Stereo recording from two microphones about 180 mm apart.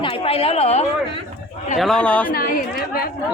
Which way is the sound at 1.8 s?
5° left (ahead or behind).